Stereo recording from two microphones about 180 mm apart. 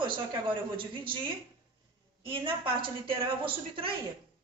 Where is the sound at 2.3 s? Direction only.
30° right (ahead or behind).